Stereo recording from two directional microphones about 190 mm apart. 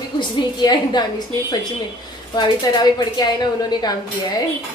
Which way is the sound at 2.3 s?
20° left (ahead or behind).